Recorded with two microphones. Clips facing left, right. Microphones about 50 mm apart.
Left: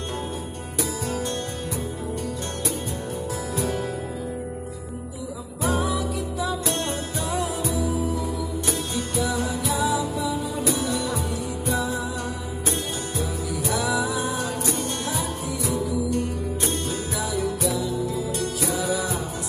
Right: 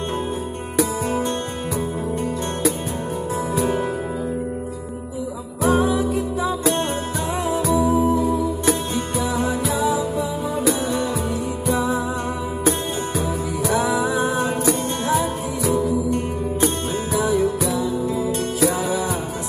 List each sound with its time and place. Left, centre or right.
5.7 s music: right
9.2 s music: right
11.7 s music: right
13.7 s music: right
17.2 s music: right